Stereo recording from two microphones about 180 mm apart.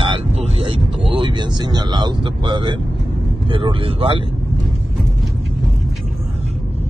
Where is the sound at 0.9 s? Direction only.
25° right (ahead or behind).